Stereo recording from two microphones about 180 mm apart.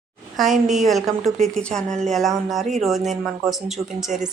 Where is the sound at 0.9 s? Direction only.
Centre (ahead or behind).